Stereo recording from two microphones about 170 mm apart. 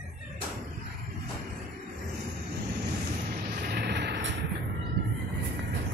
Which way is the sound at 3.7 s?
80° right.